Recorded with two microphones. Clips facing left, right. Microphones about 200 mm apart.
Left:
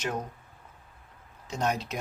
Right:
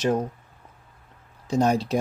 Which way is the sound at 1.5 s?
35° right (ahead or behind).